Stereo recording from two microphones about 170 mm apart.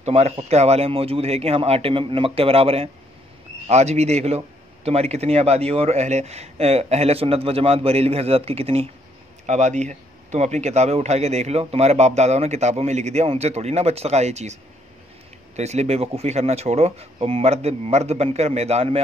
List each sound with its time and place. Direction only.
0.0 s speech: 40° right (ahead or behind)